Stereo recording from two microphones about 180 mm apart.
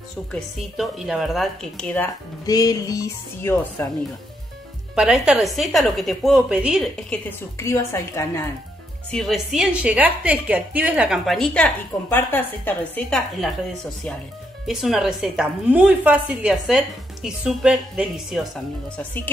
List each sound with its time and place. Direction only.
0.3 s a woman's voice: centre (ahead or behind)
2.4 s speech: 20° left (ahead or behind)
4.9 s a woman's voice: 5° right (ahead or behind)
7.1 s a woman's voice: 15° left (ahead or behind)
9.1 s a woman's voice: centre (ahead or behind)
14.7 s a woman's voice: 5° right (ahead or behind)